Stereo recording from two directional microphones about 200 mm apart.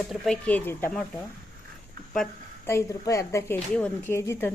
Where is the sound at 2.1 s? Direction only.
5° left (ahead or behind).